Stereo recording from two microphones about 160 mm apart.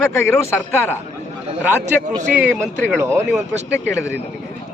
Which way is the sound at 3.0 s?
15° right (ahead or behind).